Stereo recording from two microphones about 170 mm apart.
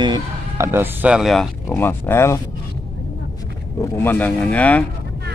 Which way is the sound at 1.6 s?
15° left (ahead or behind).